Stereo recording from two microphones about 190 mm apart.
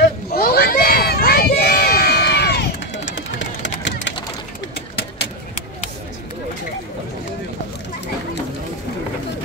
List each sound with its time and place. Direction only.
0.3 s crowd: 55° left (ahead or behind); by 4.1 s 70° left (ahead or behind)